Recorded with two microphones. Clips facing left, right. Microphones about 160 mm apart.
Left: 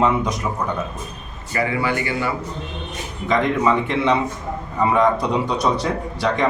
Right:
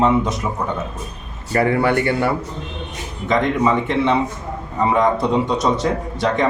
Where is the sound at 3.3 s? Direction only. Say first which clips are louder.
Right 1 dB; centre (ahead or behind).